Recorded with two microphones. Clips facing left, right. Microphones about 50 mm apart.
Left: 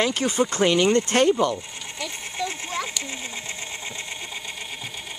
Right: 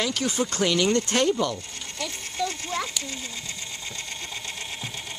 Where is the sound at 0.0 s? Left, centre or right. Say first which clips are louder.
Left 4 dB; left.